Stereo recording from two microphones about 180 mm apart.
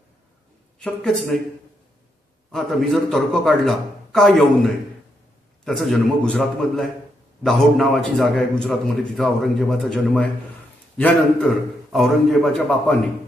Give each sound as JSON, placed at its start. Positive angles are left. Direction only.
{"t": 0.7, "sound": "a man's voice", "side_deg": 5}
{"t": 2.5, "sound": "a man's voice", "side_deg": 0}